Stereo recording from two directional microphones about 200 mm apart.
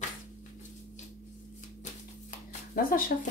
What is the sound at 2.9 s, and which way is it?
Speech, 45° left (ahead or behind).